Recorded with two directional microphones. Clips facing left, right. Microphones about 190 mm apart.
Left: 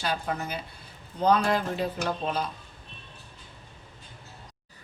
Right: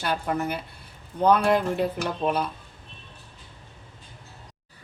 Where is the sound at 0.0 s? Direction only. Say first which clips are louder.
Right 4 dB; 60° right (ahead or behind).